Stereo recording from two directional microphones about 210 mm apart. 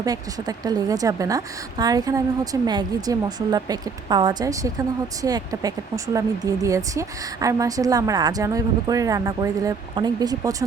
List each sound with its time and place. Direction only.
0.0 s a woman's voice: 15° right (ahead or behind)